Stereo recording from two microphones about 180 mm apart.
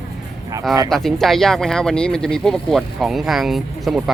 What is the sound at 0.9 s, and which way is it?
Speech, centre (ahead or behind).